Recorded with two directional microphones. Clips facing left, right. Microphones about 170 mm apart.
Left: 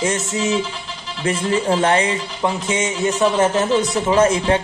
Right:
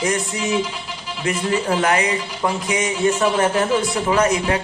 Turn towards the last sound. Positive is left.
turn(degrees=30)  # may be behind; listen again after turning